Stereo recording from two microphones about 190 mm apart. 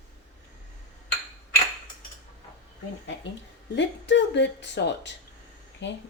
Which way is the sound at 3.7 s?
70° left (ahead or behind).